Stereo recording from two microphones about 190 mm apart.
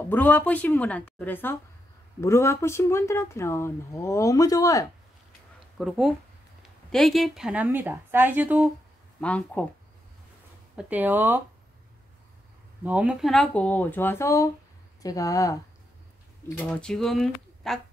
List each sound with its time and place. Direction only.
0.1 s speech: 10° left (ahead or behind)
5.8 s speech: 5° right (ahead or behind)
9.2 s speech: 5° left (ahead or behind)
10.8 s speech: 10° right (ahead or behind)
12.8 s speech: 5° right (ahead or behind)